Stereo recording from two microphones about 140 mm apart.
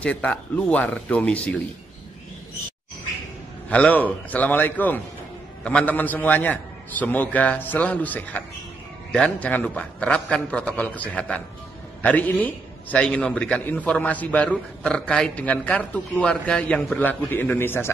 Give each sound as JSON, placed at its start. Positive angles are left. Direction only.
{"t": 0.0, "sound": "a man's voice", "side_deg": 10}
{"t": 3.7, "sound": "a man's voice", "side_deg": 10}